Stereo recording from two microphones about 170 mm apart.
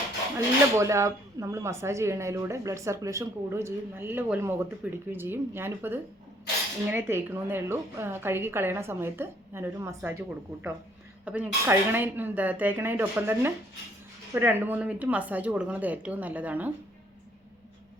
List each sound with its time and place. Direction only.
0.3 s speech: 15° right (ahead or behind)